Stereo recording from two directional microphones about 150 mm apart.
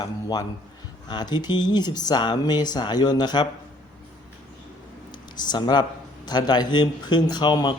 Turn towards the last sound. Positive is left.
turn(degrees=30)  # may be behind; listen again after turning